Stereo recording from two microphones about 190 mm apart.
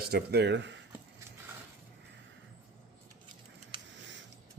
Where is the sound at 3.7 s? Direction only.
25° right (ahead or behind).